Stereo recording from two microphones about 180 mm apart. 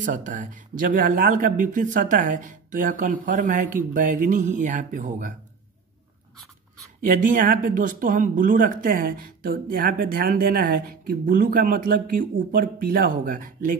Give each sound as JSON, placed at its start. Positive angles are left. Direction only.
{"t": 0.0, "sound": "speech", "side_deg": -45}
{"t": 7.1, "sound": "speech", "side_deg": -45}